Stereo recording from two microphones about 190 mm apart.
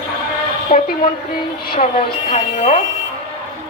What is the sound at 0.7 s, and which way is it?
Speech, 40° left (ahead or behind).